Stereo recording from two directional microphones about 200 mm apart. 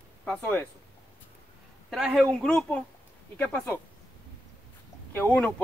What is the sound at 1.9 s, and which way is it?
Speech, centre (ahead or behind).